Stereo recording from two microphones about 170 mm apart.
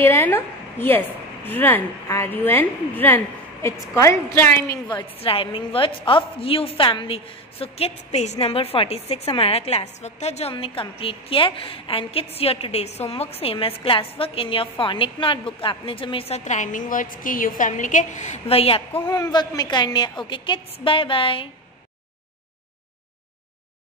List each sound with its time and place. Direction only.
0.0 s a woman's voice: 15° left (ahead or behind)
4.8 s a woman's voice: 30° left (ahead or behind)
19.0 s a woman's voice: 20° left (ahead or behind)